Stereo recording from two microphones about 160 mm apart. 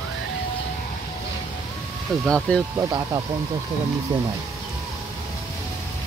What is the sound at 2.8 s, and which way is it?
Speech, 25° right (ahead or behind).